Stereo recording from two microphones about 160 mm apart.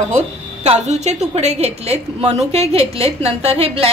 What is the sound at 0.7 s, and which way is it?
A woman's voice, 45° right (ahead or behind).